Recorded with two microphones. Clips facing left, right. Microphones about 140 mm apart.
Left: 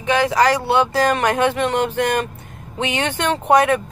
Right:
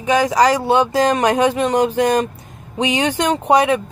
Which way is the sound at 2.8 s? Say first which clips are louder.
Right 4 dB; 15° right (ahead or behind).